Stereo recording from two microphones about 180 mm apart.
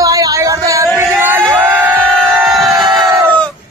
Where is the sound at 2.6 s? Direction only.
5° left (ahead or behind).